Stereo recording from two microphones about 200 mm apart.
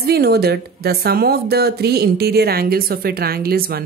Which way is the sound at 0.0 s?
55° right (ahead or behind).